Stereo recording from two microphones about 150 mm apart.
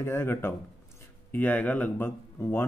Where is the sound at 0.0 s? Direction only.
15° left (ahead or behind).